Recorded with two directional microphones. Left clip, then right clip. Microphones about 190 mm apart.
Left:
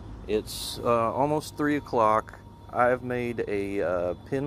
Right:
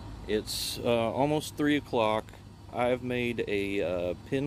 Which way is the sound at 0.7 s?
30° right (ahead or behind).